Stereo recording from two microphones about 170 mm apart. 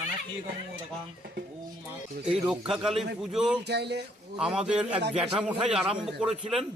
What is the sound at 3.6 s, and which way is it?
Speech, 80° right.